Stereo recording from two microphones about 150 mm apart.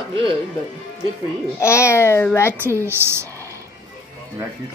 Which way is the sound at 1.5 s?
20° left (ahead or behind).